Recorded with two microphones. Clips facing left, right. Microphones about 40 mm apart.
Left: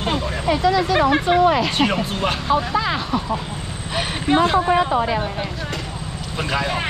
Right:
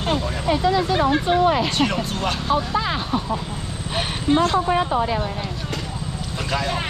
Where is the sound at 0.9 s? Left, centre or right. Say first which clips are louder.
Left 2 dB; left.